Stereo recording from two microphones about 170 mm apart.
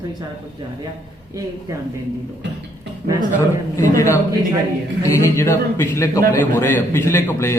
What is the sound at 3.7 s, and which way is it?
A man's voice, 15° left (ahead or behind).